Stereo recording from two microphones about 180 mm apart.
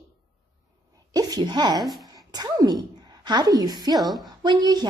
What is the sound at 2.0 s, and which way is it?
A woman's voice, 20° right (ahead or behind).